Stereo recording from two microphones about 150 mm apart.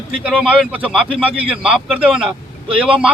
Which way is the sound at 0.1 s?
5° right (ahead or behind).